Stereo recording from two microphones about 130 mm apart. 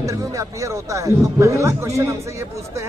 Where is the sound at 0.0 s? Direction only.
25° right (ahead or behind).